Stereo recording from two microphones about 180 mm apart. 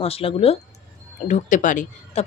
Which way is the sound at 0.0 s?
35° left (ahead or behind).